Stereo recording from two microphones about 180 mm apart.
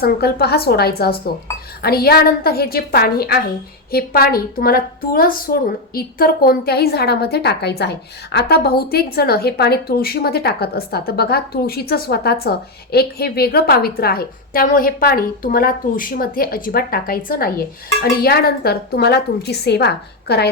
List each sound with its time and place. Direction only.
0.0 s a woman's voice: 60° left (ahead or behind)